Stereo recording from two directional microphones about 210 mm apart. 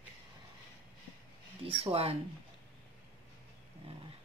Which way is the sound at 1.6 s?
25° right (ahead or behind).